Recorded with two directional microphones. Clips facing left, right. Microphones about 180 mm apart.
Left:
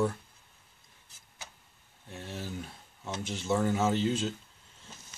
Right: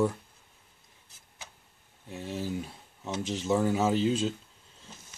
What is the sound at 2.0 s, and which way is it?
Speech, 15° right (ahead or behind).